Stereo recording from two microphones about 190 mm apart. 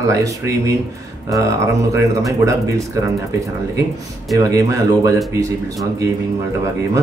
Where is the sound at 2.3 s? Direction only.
15° right (ahead or behind).